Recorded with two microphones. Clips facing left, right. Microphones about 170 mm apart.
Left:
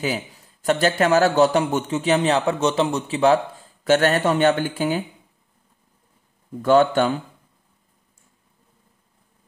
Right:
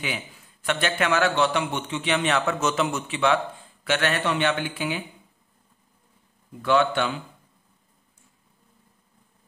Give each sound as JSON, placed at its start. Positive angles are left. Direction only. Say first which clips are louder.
{"t": 0.0, "sound": "a man's voice", "louder": "left 7 dB", "side_deg": 40}
{"t": 6.6, "sound": "speech", "louder": "left 6 dB", "side_deg": 45}